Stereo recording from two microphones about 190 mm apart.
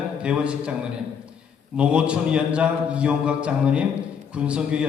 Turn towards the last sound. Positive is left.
turn(degrees=-5)  # may be behind; listen again after turning